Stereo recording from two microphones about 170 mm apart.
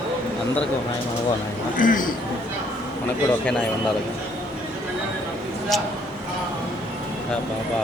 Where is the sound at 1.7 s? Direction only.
55° left (ahead or behind).